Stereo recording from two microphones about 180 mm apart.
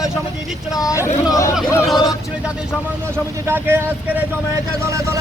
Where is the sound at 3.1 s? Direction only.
15° right (ahead or behind).